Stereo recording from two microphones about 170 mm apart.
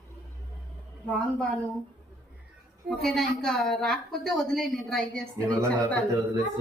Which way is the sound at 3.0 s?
Centre (ahead or behind).